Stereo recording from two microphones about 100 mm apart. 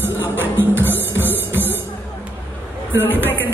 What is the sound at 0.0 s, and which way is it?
Music, 20° right (ahead or behind).